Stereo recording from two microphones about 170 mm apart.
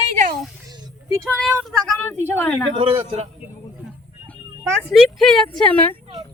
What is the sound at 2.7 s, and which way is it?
Speech, 35° right (ahead or behind).